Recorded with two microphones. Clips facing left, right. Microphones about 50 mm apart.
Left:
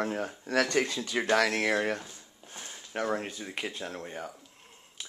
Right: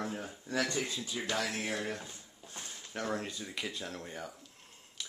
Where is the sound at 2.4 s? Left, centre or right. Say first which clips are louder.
Left 2 dB; left.